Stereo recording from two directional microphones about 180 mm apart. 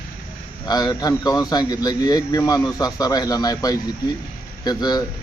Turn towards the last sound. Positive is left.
turn(degrees=20)  # may be behind; listen again after turning